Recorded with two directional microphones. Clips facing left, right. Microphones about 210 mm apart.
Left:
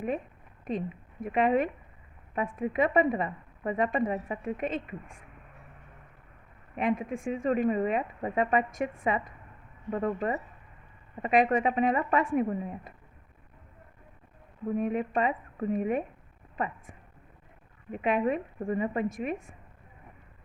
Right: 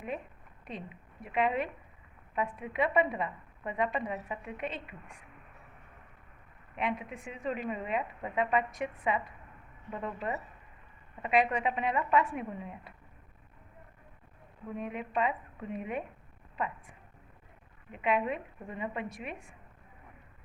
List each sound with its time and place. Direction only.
0.7 s a woman's voice: 45° left (ahead or behind)
6.7 s a woman's voice: 45° left (ahead or behind)
14.8 s a woman's voice: 45° left (ahead or behind)
17.9 s a woman's voice: 45° left (ahead or behind)